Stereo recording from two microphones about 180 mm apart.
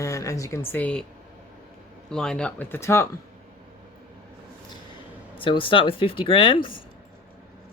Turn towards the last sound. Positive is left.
turn(degrees=30)  # may be behind; listen again after turning